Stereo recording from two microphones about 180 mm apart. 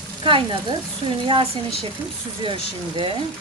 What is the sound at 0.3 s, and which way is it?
Speech, 30° right (ahead or behind).